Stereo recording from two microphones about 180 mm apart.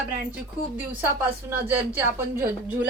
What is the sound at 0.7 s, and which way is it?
Speech, 10° right (ahead or behind).